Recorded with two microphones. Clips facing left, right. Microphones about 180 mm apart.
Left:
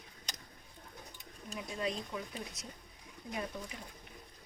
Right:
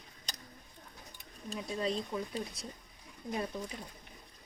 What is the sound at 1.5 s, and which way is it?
Speech, 30° right (ahead or behind).